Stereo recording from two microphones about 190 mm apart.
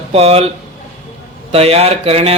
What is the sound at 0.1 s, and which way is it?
Speech, 30° right (ahead or behind).